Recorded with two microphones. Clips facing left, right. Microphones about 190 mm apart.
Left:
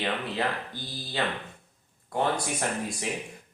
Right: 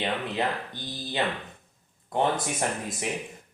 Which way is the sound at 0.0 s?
20° right (ahead or behind).